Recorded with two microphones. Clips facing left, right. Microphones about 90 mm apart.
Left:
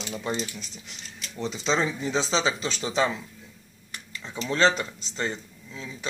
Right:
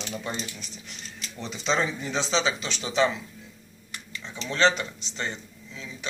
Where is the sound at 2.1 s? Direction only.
35° left (ahead or behind).